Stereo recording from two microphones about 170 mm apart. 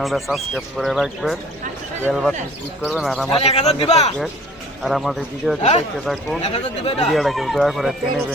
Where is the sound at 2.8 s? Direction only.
Centre (ahead or behind).